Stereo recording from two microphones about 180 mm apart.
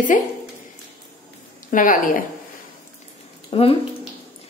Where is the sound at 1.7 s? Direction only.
50° left (ahead or behind).